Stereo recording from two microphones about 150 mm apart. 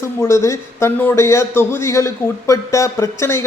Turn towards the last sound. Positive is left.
turn(degrees=15)  # may be behind; listen again after turning